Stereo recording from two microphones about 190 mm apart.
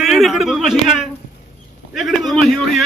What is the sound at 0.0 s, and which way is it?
A man's voice, centre (ahead or behind).